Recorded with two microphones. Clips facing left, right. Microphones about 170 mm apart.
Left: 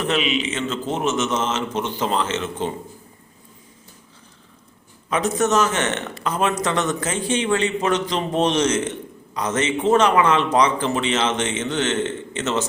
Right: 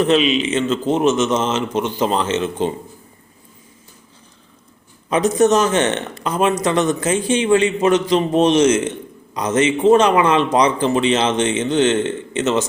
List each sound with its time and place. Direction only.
0.1 s speech: 20° right (ahead or behind)
5.0 s a man's voice: 20° right (ahead or behind)